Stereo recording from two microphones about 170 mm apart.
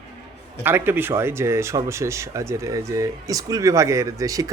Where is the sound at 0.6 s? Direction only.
10° right (ahead or behind).